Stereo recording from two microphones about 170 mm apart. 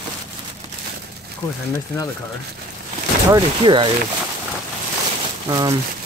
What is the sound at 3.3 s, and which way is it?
Speech, 25° right (ahead or behind).